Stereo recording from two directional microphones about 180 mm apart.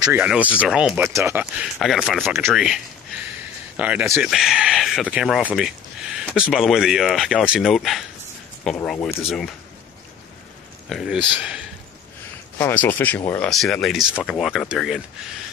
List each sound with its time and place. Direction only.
0.1 s speech: 10° right (ahead or behind)
4.3 s speech: centre (ahead or behind)
10.9 s speech: centre (ahead or behind)
12.5 s speech: 10° left (ahead or behind)